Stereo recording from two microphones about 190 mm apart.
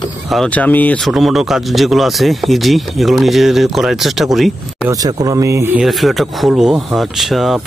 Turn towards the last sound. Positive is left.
turn(degrees=0)  # may be behind; listen again after turning